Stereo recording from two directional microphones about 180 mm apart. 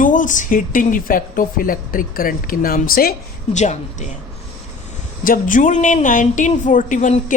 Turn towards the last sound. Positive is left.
turn(degrees=45)  # may be behind; listen again after turning